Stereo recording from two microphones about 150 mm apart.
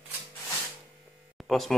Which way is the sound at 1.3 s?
Centre (ahead or behind).